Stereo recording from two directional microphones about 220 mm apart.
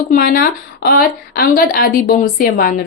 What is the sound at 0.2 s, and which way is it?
A woman's voice, 40° left (ahead or behind).